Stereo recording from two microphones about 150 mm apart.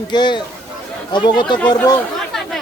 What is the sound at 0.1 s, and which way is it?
Speech, 30° left (ahead or behind).